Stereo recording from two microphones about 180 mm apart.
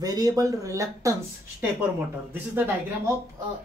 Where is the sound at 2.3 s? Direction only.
10° right (ahead or behind).